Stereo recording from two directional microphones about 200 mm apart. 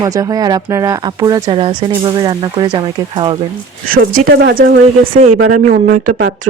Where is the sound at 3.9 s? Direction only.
50° right (ahead or behind).